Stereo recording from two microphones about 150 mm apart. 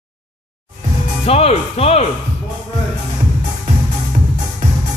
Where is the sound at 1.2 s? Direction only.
40° left (ahead or behind).